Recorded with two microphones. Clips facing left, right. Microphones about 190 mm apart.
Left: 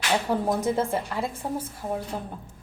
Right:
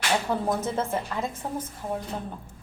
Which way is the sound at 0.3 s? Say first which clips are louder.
Left 2 dB; 10° left (ahead or behind).